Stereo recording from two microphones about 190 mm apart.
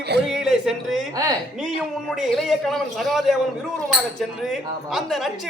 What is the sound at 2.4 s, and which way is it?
Speech, centre (ahead or behind).